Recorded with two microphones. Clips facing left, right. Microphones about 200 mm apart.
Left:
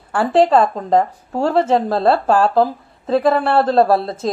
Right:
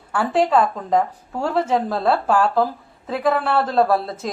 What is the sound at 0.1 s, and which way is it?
A woman's voice, 30° left (ahead or behind).